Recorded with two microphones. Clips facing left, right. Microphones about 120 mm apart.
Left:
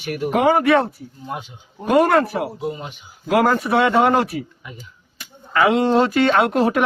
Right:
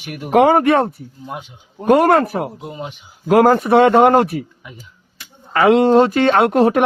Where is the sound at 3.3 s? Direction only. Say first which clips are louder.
Right 5 dB; 40° right (ahead or behind).